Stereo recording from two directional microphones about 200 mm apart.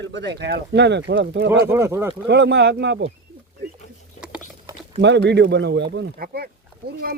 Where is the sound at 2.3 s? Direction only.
60° right (ahead or behind).